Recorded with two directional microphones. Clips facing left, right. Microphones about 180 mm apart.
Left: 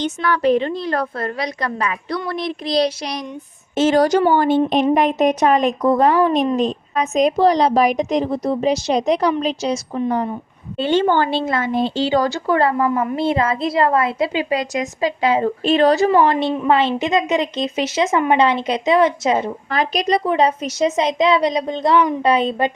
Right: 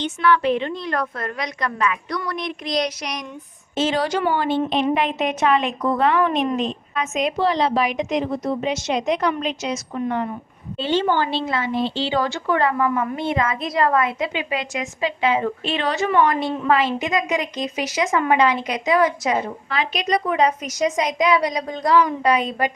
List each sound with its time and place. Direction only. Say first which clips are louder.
0.0 s speech: left 1 dB; 40° left (ahead or behind)
3.8 s speech: left 7 dB; 45° left (ahead or behind)
10.8 s speech: left 4 dB; 50° left (ahead or behind); by 19.4 s 25° left (ahead or behind)
19.7 s a woman's voice: left 4 dB; 40° left (ahead or behind)